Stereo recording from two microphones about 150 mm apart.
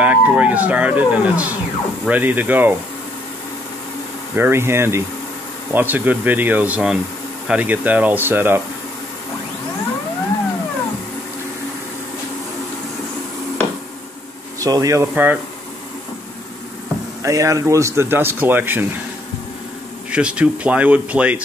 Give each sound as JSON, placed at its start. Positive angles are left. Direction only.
{"t": 0.0, "sound": "speech", "side_deg": -10}
{"t": 4.4, "sound": "speech", "side_deg": -15}
{"t": 14.6, "sound": "speech", "side_deg": -25}
{"t": 17.2, "sound": "speech", "side_deg": -20}
{"t": 20.1, "sound": "speech", "side_deg": -5}